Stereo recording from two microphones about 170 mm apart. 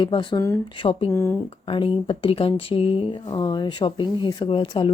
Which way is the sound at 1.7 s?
30° left (ahead or behind).